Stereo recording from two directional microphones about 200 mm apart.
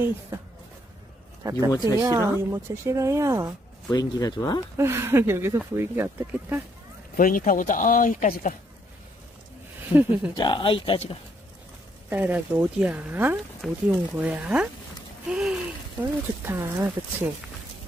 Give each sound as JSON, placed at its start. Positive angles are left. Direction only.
{"t": 1.4, "sound": "speech", "side_deg": -15}
{"t": 1.7, "sound": "speech", "side_deg": 20}
{"t": 2.0, "sound": "speech", "side_deg": -15}
{"t": 3.9, "sound": "speech", "side_deg": 20}
{"t": 4.7, "sound": "speech", "side_deg": -15}
{"t": 7.2, "sound": "speech", "side_deg": 45}
{"t": 9.9, "sound": "speech", "side_deg": -10}
{"t": 10.3, "sound": "speech", "side_deg": 25}
{"t": 12.1, "sound": "speech", "side_deg": -10}
{"t": 15.2, "sound": "a sound", "side_deg": -5}